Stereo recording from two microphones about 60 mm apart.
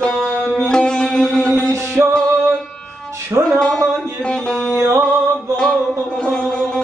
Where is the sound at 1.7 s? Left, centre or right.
Right.